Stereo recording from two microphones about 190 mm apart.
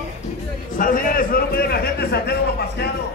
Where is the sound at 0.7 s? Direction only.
45° left (ahead or behind).